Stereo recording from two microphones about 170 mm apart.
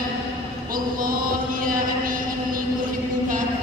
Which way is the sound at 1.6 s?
55° right (ahead or behind).